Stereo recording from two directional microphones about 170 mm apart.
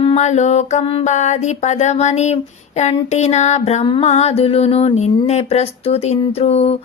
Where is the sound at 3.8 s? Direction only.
30° left (ahead or behind).